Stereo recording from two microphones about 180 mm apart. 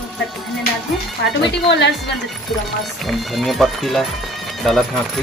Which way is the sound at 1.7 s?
75° left (ahead or behind).